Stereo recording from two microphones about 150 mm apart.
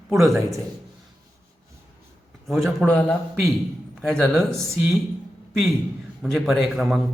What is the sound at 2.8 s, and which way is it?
A man's voice, 10° left (ahead or behind).